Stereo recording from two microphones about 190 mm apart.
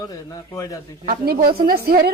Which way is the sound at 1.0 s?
50° right (ahead or behind).